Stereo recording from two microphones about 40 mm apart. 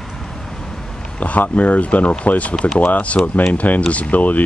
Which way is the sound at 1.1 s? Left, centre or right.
Left.